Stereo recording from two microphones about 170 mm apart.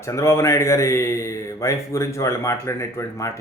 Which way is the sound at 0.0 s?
15° left (ahead or behind).